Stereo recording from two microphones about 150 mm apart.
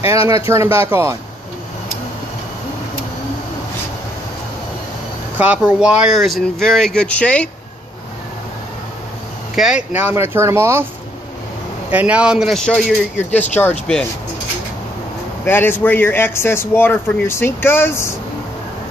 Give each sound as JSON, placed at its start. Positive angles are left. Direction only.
{"t": 0.1, "sound": "speech", "side_deg": -20}
{"t": 5.4, "sound": "speech", "side_deg": -10}
{"t": 9.6, "sound": "speech", "side_deg": -5}
{"t": 11.9, "sound": "speech", "side_deg": -10}
{"t": 15.4, "sound": "speech", "side_deg": 15}